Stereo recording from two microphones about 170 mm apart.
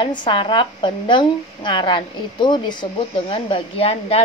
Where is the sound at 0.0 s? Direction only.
30° left (ahead or behind).